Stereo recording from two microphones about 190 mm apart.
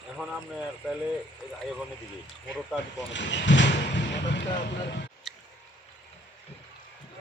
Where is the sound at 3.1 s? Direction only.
70° left (ahead or behind).